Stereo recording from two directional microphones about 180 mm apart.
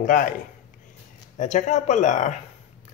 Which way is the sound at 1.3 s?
40° left (ahead or behind).